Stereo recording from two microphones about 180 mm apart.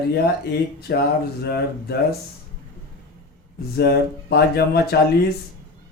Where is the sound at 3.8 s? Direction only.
65° left (ahead or behind).